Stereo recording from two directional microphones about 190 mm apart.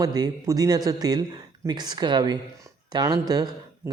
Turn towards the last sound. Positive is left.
turn(degrees=-20)  # may be behind; listen again after turning